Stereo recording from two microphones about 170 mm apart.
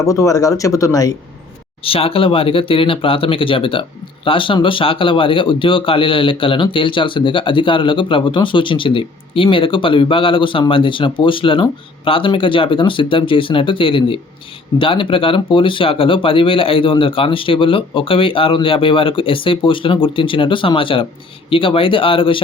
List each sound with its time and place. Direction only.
0.0 s speech: 20° left (ahead or behind)
1.8 s speech: 35° left (ahead or behind)